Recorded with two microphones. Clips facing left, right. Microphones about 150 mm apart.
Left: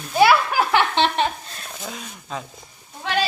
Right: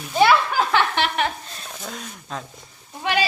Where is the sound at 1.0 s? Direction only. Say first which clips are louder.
Left 3 dB; 30° left (ahead or behind).